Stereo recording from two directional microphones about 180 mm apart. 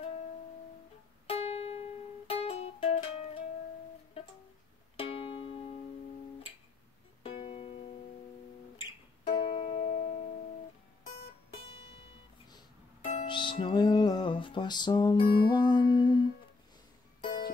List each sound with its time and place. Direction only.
1.3 s music: 35° left (ahead or behind)
4.9 s music: 30° left (ahead or behind)
7.2 s music: 30° left (ahead or behind)
9.2 s music: 25° left (ahead or behind)
13.1 s music: 30° left (ahead or behind)
17.2 s music: 25° left (ahead or behind)